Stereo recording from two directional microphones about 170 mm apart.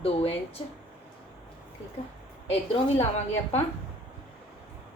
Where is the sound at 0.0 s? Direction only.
35° left (ahead or behind).